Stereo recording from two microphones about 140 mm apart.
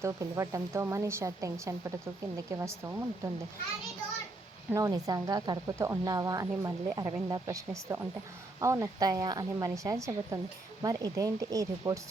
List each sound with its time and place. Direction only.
0.0 s speech: 20° right (ahead or behind)
4.7 s speech: 25° right (ahead or behind)